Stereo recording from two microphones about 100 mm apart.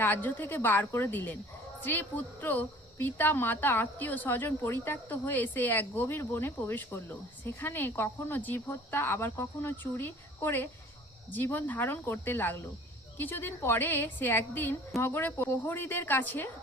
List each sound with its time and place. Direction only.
0.0 s speech: 20° left (ahead or behind)